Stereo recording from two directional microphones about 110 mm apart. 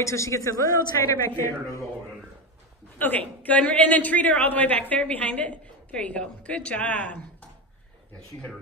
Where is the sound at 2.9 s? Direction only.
15° left (ahead or behind).